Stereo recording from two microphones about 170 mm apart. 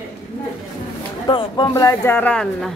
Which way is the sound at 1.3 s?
25° left (ahead or behind).